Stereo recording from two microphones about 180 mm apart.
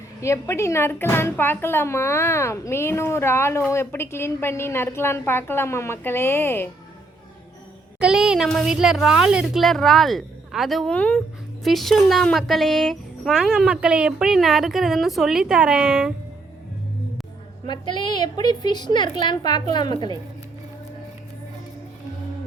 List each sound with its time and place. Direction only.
0.2 s speech: 15° left (ahead or behind)
7.9 s speech: 5° right (ahead or behind)
17.7 s a woman's voice: 25° left (ahead or behind)